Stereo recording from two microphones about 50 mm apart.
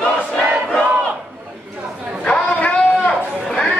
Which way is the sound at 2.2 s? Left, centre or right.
Left.